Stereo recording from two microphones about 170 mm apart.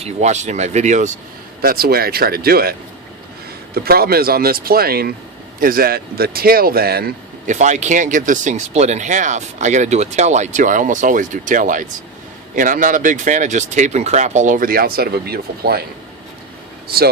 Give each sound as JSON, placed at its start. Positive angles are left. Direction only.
{"t": 0.0, "sound": "speech", "side_deg": -40}
{"t": 1.6, "sound": "speech", "side_deg": -60}
{"t": 3.8, "sound": "speech", "side_deg": -65}
{"t": 7.4, "sound": "speech", "side_deg": -45}
{"t": 16.9, "sound": "speech", "side_deg": -65}